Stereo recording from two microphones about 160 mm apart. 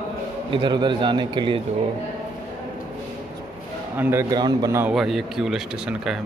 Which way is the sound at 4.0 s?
15° right (ahead or behind).